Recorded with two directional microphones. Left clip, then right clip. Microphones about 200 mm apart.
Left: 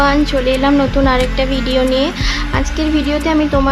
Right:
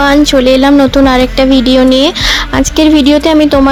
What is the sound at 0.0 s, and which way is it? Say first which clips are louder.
Speech: right 7 dB; 35° right (ahead or behind).